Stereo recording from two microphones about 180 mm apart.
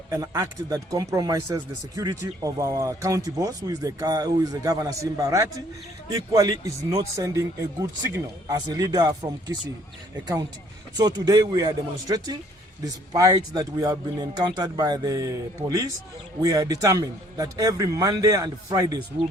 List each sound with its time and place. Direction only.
0.1 s speech: 15° right (ahead or behind)
10.9 s speech: 20° right (ahead or behind)